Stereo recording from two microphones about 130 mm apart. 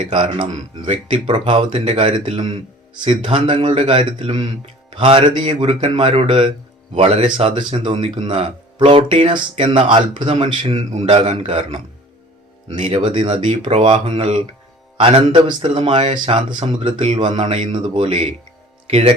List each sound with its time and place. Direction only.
0.1 s a man's voice: 40° right (ahead or behind)
2.0 s a man's voice: 40° right (ahead or behind)
10.8 s a man's voice: 60° right (ahead or behind)
12.8 s speech: 40° right (ahead or behind)
15.6 s a man's voice: 50° right (ahead or behind)
17.4 s speech: 55° right (ahead or behind)